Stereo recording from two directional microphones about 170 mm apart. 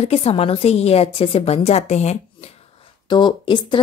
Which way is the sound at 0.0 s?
35° left (ahead or behind).